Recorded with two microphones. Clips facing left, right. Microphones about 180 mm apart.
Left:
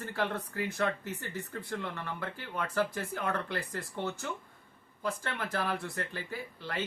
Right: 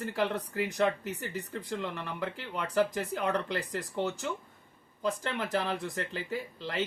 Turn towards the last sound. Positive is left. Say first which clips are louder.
# right 3 dB
turn(degrees=-20)  # may be behind; listen again after turning